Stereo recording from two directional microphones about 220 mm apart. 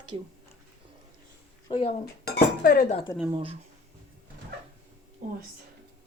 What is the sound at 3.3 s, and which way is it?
Speech, 25° right (ahead or behind).